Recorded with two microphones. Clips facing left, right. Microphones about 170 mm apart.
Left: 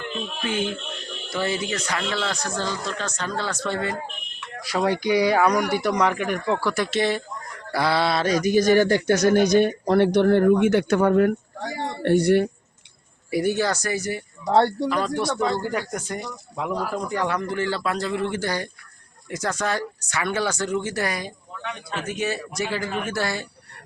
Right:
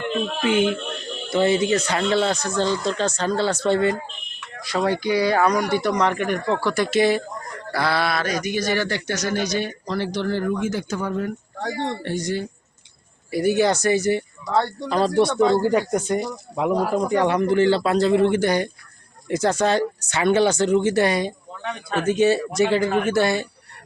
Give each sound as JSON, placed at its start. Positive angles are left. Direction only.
{"t": 0.0, "sound": "speech", "side_deg": -65}
{"t": 1.3, "sound": "speech", "side_deg": -25}
{"t": 4.6, "sound": "speech", "side_deg": 10}
{"t": 7.7, "sound": "speech", "side_deg": 15}
{"t": 13.6, "sound": "speech", "side_deg": -20}